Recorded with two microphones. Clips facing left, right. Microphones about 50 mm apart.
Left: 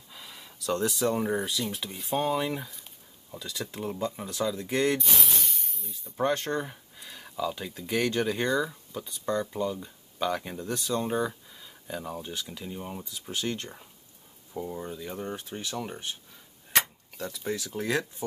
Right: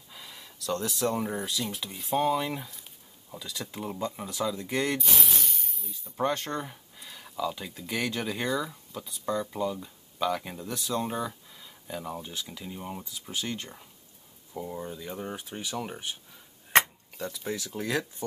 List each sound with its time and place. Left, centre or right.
0.1 s speech: centre
16.7 s a sound: right
17.2 s speech: centre